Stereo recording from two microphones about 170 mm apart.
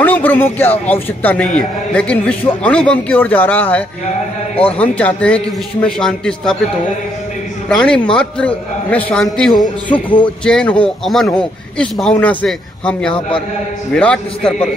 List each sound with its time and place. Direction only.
0.0 s a man's voice: 10° left (ahead or behind)
7.7 s a man's voice: 5° left (ahead or behind)
10.0 s a man's voice: 30° left (ahead or behind)
10.4 s a man's voice: 5° left (ahead or behind)